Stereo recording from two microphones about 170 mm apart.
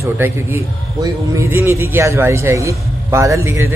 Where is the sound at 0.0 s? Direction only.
15° right (ahead or behind).